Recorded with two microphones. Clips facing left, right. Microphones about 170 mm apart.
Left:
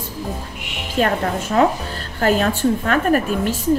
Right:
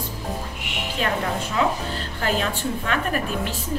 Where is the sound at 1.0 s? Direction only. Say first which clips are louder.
Left 4 dB; 45° left (ahead or behind).